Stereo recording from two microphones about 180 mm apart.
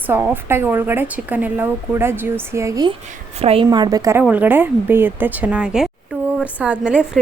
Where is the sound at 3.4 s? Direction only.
30° right (ahead or behind); by 7.3 s centre (ahead or behind).